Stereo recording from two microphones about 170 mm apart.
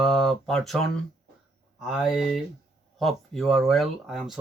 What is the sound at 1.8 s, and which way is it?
Speech, 5° right (ahead or behind).